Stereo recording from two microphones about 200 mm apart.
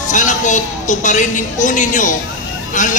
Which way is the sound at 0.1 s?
40° left (ahead or behind).